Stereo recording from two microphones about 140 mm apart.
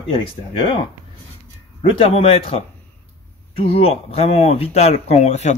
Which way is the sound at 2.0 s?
45° left (ahead or behind).